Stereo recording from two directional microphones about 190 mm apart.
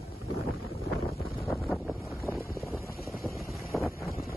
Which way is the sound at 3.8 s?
15° left (ahead or behind).